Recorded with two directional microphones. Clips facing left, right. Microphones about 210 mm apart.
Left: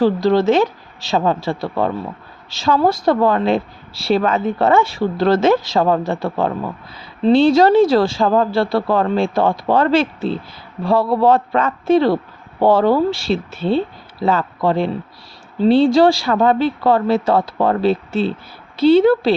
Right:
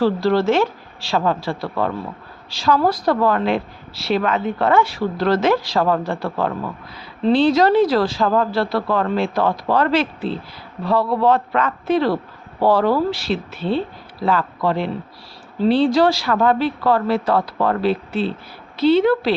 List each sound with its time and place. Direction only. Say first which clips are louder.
0.0 s a man's voice: left 3 dB; 20° left (ahead or behind)
15.9 s a man's voice: left 3 dB; 25° left (ahead or behind)